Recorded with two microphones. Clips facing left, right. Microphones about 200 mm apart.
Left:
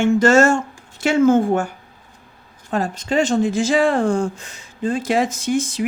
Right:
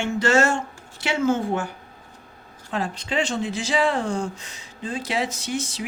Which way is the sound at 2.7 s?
45° left (ahead or behind).